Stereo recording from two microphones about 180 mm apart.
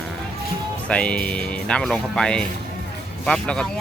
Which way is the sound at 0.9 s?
5° left (ahead or behind).